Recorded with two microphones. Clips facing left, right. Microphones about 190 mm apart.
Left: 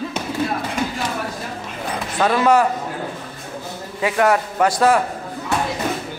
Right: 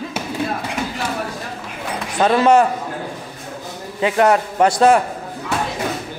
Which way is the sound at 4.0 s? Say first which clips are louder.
Right 2 dB; 25° right (ahead or behind).